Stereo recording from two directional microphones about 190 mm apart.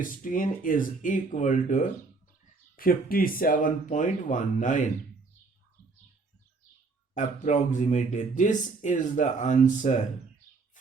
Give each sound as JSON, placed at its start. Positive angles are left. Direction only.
{"t": 0.0, "sound": "speech", "side_deg": 45}
{"t": 7.1, "sound": "speech", "side_deg": 40}